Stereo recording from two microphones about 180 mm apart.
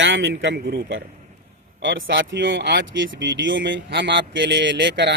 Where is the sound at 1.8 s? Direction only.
90° right.